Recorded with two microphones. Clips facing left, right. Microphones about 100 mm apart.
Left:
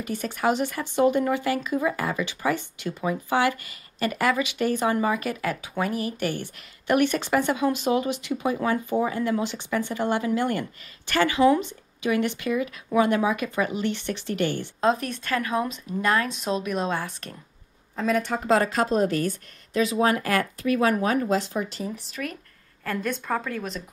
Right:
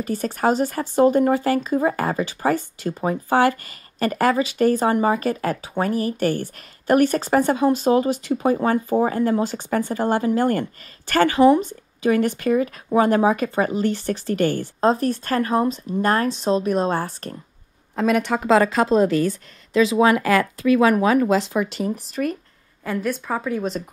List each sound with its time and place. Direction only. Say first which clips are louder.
0.0 s speech: right 4 dB; 40° right (ahead or behind)
17.9 s a woman's voice: right 5 dB; 75° right (ahead or behind)
19.7 s speech: right 6 dB; 90° right
21.9 s speech: right 8 dB; 40° right (ahead or behind)
22.8 s a woman's voice: right 3 dB; 5° right (ahead or behind)